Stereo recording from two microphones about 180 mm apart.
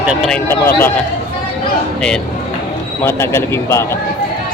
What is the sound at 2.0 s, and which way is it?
Speech, 5° left (ahead or behind).